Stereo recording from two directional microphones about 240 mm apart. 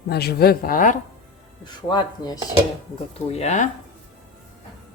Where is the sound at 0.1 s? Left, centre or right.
Left.